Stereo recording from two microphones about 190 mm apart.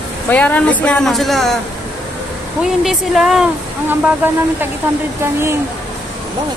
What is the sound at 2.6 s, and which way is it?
Speech, centre (ahead or behind).